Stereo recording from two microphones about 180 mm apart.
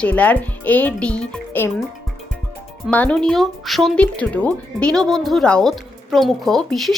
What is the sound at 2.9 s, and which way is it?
Speech, 10° left (ahead or behind).